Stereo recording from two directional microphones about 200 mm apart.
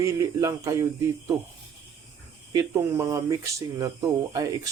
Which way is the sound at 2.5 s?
15° right (ahead or behind).